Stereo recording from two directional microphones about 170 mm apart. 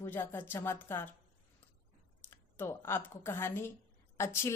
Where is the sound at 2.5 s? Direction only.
15° left (ahead or behind).